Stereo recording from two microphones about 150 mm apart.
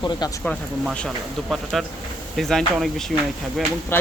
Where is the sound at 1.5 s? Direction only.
Centre (ahead or behind).